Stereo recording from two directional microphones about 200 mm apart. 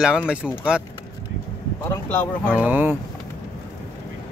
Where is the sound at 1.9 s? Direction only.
10° left (ahead or behind).